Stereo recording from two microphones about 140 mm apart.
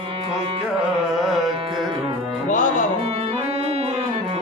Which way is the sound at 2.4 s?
65° left (ahead or behind).